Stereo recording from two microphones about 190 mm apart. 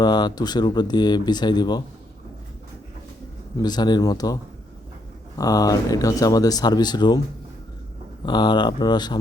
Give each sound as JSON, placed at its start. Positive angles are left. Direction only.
{"t": 0.0, "sound": "speech", "side_deg": 20}
{"t": 3.6, "sound": "speech", "side_deg": 20}
{"t": 5.4, "sound": "speech", "side_deg": 20}
{"t": 8.2, "sound": "speech", "side_deg": 25}